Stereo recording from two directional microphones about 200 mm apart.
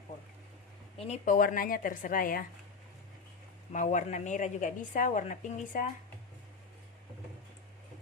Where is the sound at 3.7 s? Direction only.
40° left (ahead or behind).